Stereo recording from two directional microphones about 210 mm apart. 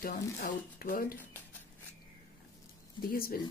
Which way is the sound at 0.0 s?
45° left (ahead or behind).